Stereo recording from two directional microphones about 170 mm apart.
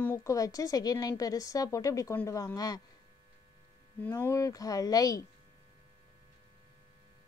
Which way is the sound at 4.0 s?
15° left (ahead or behind).